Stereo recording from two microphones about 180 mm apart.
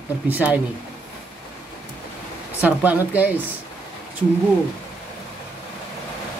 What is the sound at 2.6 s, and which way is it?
Speech, 10° right (ahead or behind).